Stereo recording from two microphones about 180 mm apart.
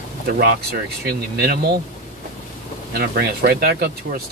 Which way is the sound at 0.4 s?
65° right (ahead or behind).